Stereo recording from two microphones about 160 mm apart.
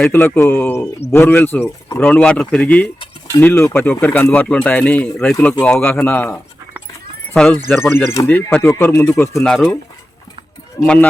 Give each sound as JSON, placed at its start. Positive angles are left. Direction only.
{"t": 0.0, "sound": "speech", "side_deg": 10}
{"t": 7.9, "sound": "speech", "side_deg": 15}
{"t": 9.4, "sound": "speech", "side_deg": 5}
{"t": 10.8, "sound": "speech", "side_deg": 5}